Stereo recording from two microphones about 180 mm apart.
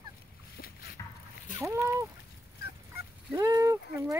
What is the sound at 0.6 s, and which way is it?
Boat, 55° left (ahead or behind).